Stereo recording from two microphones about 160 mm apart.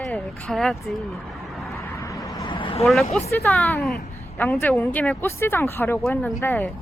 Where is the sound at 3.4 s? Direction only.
10° left (ahead or behind).